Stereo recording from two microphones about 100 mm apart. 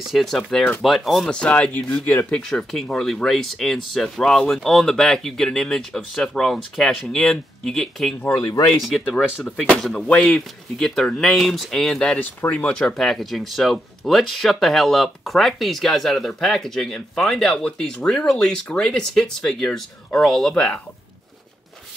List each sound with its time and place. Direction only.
0.0 s speech: centre (ahead or behind)